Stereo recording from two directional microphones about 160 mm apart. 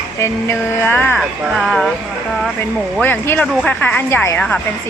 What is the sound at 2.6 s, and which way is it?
A woman's voice, 10° left (ahead or behind).